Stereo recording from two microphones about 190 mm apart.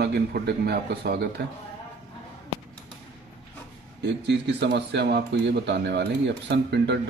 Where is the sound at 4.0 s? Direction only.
65° right (ahead or behind).